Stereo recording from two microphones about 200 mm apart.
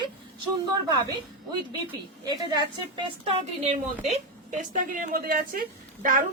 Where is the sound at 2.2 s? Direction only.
20° right (ahead or behind); by 6.2 s 45° right (ahead or behind).